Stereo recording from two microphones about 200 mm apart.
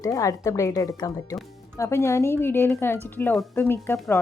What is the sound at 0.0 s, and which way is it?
Speech, 15° left (ahead or behind).